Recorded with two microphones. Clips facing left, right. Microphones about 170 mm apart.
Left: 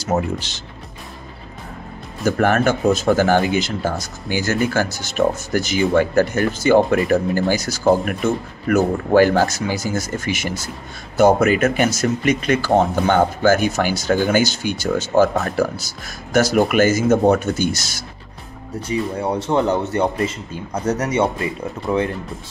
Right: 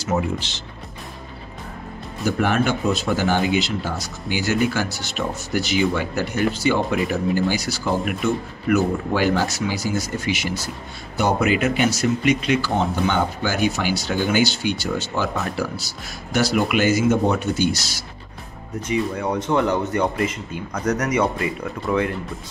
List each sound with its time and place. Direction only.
0.0 s speech: 45° left (ahead or behind)
2.2 s speech: 45° left (ahead or behind)
18.8 s speech: 30° left (ahead or behind)